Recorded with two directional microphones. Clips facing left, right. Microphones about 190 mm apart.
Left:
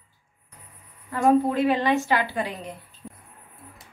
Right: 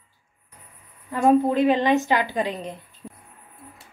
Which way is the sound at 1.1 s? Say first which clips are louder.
Right 2 dB; 20° right (ahead or behind).